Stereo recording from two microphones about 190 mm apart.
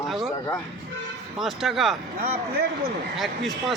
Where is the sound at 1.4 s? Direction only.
Centre (ahead or behind).